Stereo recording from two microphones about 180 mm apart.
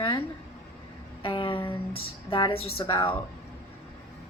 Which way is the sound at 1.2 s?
30° left (ahead or behind).